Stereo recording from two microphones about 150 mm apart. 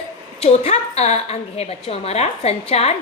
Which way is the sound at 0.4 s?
45° left (ahead or behind).